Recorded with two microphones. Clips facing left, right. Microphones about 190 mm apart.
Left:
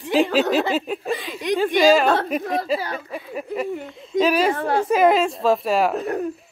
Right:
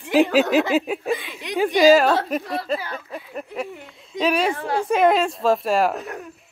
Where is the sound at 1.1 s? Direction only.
40° left (ahead or behind).